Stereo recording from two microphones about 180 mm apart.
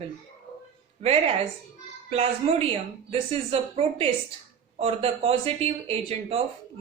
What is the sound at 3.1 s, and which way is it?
Speech, 35° right (ahead or behind).